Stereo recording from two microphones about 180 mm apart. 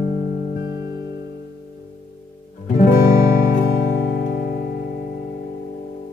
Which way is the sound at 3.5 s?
50° left (ahead or behind).